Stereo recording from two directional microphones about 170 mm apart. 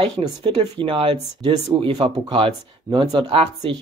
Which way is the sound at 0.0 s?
25° right (ahead or behind).